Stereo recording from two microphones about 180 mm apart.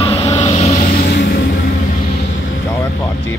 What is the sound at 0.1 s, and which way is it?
Vehicle, 20° left (ahead or behind).